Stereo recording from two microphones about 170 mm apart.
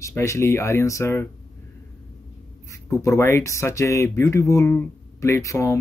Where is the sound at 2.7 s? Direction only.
15° left (ahead or behind).